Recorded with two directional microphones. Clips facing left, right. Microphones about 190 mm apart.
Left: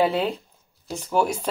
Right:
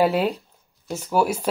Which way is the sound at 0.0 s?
10° right (ahead or behind).